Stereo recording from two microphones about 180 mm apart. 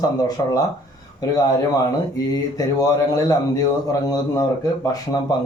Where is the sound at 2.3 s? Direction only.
20° left (ahead or behind).